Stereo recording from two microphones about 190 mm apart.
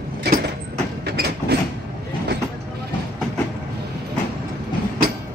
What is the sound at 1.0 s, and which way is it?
Train, 60° right (ahead or behind).